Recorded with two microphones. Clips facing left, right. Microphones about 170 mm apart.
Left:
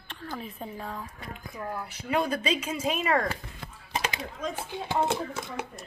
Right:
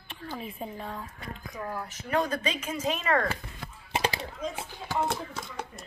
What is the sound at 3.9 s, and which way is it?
Typing, 30° right (ahead or behind).